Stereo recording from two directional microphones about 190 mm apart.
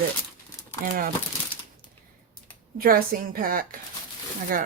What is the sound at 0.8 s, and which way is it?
Speech, 50° right (ahead or behind).